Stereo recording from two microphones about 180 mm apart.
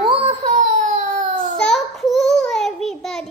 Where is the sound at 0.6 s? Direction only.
45° right (ahead or behind).